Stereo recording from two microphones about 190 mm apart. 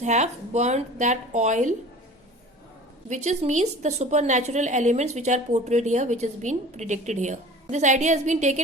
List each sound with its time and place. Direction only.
0.0 s a woman's voice: 40° right (ahead or behind)
3.1 s a woman's voice: 40° right (ahead or behind)